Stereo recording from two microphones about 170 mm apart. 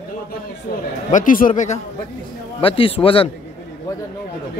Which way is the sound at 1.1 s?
55° left (ahead or behind).